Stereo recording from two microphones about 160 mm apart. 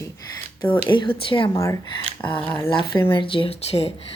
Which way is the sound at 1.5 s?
20° left (ahead or behind).